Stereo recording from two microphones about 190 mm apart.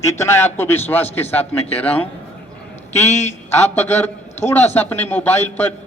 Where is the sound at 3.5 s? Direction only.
10° left (ahead or behind).